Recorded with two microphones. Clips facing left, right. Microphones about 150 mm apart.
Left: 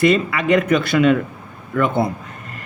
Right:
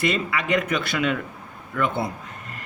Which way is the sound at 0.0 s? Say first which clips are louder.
Left 8 dB; 45° left (ahead or behind).